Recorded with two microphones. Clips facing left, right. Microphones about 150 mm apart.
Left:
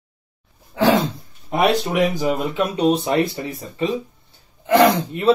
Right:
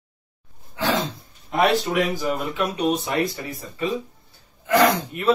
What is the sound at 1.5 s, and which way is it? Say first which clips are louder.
Speech: left 2 dB; 15° left (ahead or behind).